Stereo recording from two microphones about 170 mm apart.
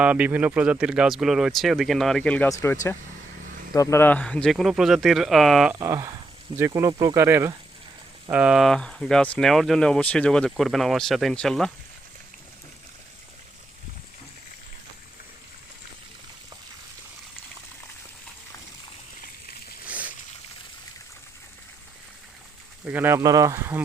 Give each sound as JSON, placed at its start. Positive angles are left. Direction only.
{"t": 0.0, "sound": "speech", "side_deg": -10}
{"t": 2.5, "sound": "speech", "side_deg": 20}
{"t": 3.8, "sound": "speech", "side_deg": 15}
{"t": 5.8, "sound": "speech", "side_deg": -20}
{"t": 19.2, "sound": "a sound", "side_deg": 60}
{"t": 19.8, "sound": "a sound", "side_deg": -10}
{"t": 22.9, "sound": "speech", "side_deg": -10}